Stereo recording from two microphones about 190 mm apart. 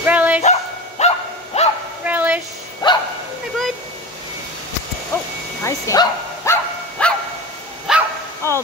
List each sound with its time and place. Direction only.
0.0 s dog: 10° right (ahead or behind)
0.4 s bow-wow: 35° left (ahead or behind)
2.0 s a sound: 10° right (ahead or behind)
2.8 s bow-wow: 25° left (ahead or behind)
5.6 s bow-wow: 15° left (ahead or behind)
7.9 s dog: centre (ahead or behind)
8.4 s a sound: 15° left (ahead or behind)